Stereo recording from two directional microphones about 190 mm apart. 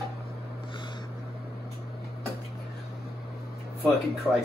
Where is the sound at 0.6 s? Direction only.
25° left (ahead or behind).